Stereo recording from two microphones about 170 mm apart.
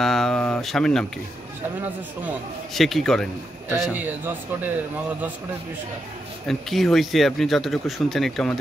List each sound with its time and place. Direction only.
0.0 s a sound: centre (ahead or behind)
2.7 s speech: centre (ahead or behind)
6.4 s speech: centre (ahead or behind)